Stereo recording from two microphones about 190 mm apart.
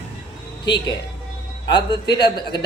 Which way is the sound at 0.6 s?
25° left (ahead or behind).